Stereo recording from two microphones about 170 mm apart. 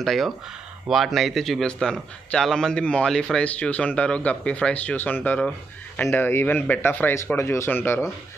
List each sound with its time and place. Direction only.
0.0 s a man's voice: centre (ahead or behind)